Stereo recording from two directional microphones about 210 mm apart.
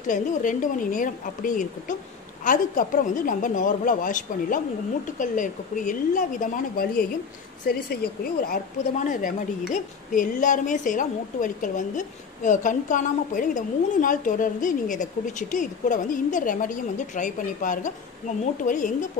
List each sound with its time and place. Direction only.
0.0 s a woman's voice: 40° left (ahead or behind)